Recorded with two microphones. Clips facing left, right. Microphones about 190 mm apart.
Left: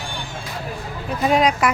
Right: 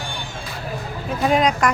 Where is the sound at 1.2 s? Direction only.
Centre (ahead or behind).